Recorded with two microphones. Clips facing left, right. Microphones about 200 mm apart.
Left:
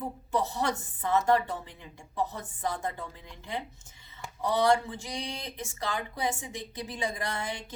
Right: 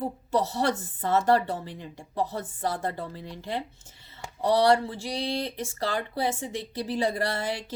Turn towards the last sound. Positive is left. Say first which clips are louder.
# right 6 dB
turn(degrees=-35)  # may be behind; listen again after turning